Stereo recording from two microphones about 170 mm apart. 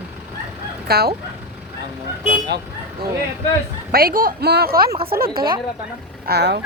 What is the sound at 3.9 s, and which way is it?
A woman's voice, 60° right (ahead or behind).